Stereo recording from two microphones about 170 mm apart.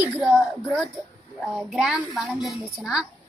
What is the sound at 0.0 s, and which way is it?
A woman's voice, 10° right (ahead or behind).